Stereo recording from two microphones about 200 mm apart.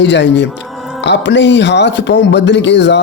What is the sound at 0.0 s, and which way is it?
Speech, 60° left (ahead or behind).